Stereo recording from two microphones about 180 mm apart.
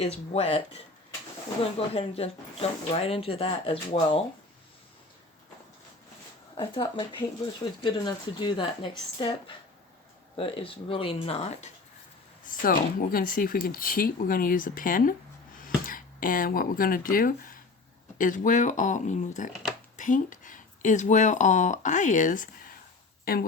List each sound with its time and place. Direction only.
0.0 s speech: 35° left (ahead or behind)
1.9 s speech: 35° left (ahead or behind)
6.6 s speech: 30° left (ahead or behind)
12.5 s speech: 50° left (ahead or behind)